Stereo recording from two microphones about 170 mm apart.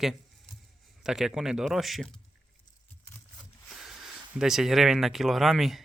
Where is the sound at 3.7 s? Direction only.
Centre (ahead or behind).